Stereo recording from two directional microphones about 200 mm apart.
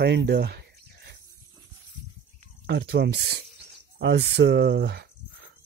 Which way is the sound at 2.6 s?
55° right (ahead or behind).